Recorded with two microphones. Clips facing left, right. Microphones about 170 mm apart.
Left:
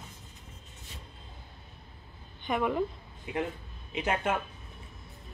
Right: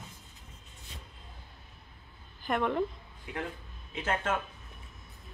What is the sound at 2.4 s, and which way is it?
Speech, centre (ahead or behind).